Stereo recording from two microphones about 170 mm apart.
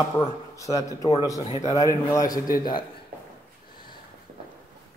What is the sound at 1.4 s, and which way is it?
Speech, 40° left (ahead or behind).